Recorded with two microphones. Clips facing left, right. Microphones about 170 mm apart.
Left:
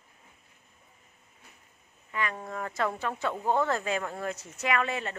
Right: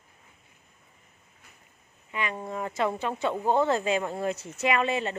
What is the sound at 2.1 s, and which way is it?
Speech, 20° right (ahead or behind).